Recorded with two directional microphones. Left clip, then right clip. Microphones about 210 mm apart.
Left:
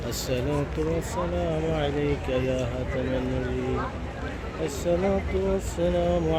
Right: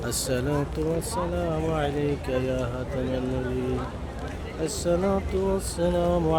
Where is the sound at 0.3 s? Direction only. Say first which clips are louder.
Even; 10° right (ahead or behind).